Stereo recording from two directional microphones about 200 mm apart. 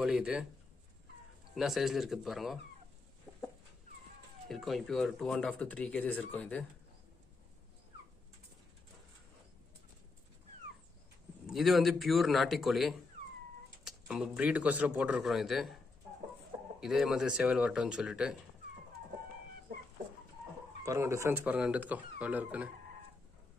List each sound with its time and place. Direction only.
0.0 s speech: 5° right (ahead or behind)
1.5 s speech: centre (ahead or behind)
4.5 s speech: centre (ahead or behind)
11.4 s speech: centre (ahead or behind)
16.8 s speech: centre (ahead or behind)
20.8 s speech: 15° right (ahead or behind)